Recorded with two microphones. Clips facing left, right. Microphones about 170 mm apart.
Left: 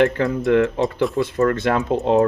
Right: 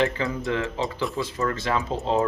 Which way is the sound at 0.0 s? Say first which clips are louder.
Left 7 dB; 60° left (ahead or behind).